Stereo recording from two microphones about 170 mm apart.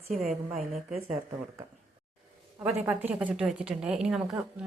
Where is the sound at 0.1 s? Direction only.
Centre (ahead or behind).